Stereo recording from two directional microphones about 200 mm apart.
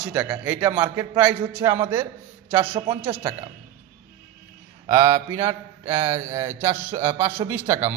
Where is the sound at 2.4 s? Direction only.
10° right (ahead or behind).